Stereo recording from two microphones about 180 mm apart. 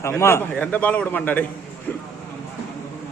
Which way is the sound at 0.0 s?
15° left (ahead or behind).